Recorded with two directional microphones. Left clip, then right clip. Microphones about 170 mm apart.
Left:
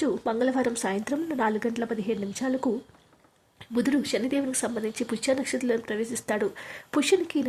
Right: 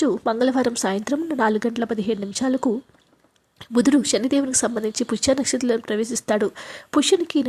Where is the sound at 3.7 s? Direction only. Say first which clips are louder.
Right 7 dB; 35° right (ahead or behind).